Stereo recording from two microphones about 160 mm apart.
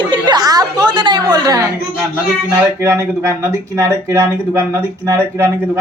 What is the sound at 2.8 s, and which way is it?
A woman's voice, 15° right (ahead or behind).